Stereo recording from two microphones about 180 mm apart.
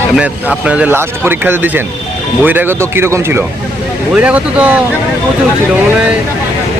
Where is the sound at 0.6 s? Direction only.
5° right (ahead or behind).